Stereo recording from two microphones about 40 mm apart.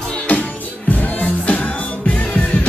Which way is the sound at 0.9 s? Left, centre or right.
Left.